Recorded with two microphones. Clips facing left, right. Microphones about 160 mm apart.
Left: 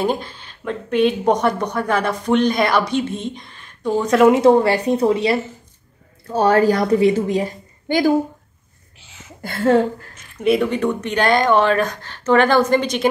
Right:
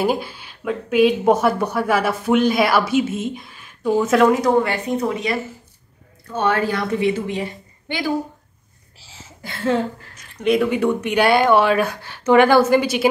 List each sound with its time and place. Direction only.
0.0 s a woman's voice: 10° right (ahead or behind)
4.3 s a woman's voice: 30° left (ahead or behind)
9.0 s a sound: 30° right (ahead or behind)
10.4 s a woman's voice: centre (ahead or behind)
10.7 s speech: 10° right (ahead or behind)